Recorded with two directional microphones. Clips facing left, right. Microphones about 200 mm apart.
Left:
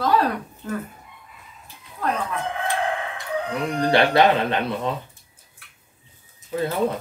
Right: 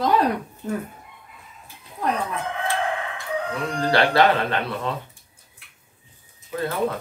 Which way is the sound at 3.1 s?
15° left (ahead or behind).